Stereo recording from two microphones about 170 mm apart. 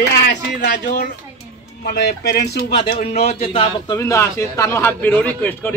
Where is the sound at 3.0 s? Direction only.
35° left (ahead or behind).